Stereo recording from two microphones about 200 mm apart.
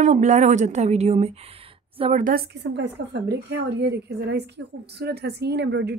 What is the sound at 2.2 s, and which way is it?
A woman's voice, 50° right (ahead or behind).